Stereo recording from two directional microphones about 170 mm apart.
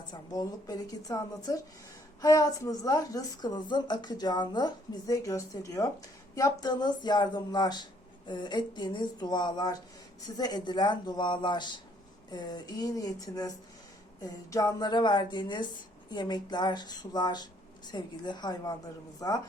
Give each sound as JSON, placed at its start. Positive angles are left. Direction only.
{"t": 0.1, "sound": "a woman's voice", "side_deg": 25}